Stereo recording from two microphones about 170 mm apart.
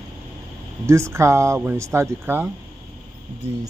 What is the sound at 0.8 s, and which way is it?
Speech, 15° right (ahead or behind).